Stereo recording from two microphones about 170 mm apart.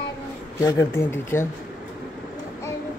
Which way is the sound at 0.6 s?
15° left (ahead or behind).